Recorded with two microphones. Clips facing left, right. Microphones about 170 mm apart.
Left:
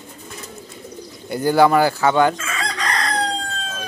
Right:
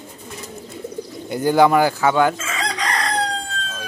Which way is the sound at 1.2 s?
15° right (ahead or behind).